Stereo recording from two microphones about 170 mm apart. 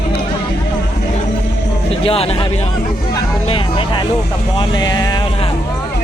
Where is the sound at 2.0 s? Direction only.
35° left (ahead or behind).